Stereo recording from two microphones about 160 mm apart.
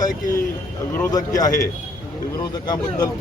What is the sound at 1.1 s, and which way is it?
Speech, 20° left (ahead or behind).